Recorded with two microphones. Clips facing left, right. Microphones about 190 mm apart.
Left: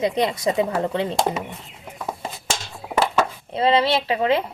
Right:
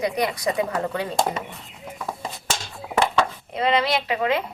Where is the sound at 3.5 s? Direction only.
30° left (ahead or behind).